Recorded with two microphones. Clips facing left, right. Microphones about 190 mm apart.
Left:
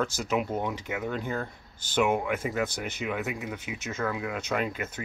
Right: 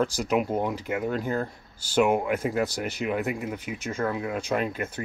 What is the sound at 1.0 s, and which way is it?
Speech, 5° right (ahead or behind).